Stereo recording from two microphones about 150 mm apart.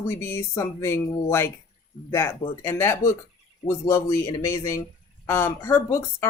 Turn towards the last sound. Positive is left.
turn(degrees=15)  # may be behind; listen again after turning